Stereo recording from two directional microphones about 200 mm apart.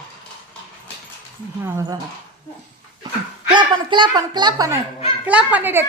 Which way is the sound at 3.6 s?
25° right (ahead or behind).